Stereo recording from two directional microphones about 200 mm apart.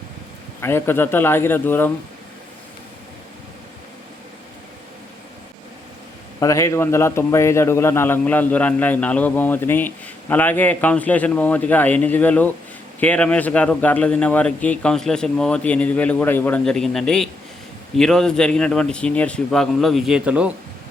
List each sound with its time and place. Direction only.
0.6 s a man's voice: 10° left (ahead or behind)
6.4 s a man's voice: 15° left (ahead or behind); by 20.5 s 5° right (ahead or behind)